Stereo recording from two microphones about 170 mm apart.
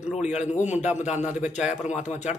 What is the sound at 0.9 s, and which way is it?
Speech, 45° left (ahead or behind).